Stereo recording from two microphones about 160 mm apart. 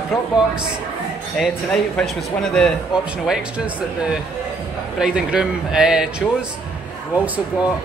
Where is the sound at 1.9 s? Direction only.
5° left (ahead or behind).